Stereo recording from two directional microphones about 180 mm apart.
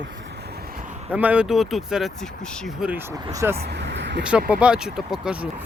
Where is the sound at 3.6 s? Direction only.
70° right (ahead or behind).